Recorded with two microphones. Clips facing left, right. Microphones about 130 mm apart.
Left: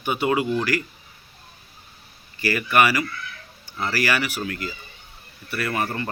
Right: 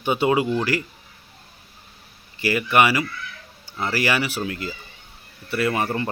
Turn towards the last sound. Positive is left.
turn(degrees=-20)  # may be behind; listen again after turning